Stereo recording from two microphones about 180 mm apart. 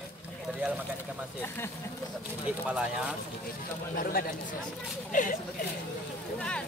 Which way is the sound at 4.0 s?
55° left (ahead or behind).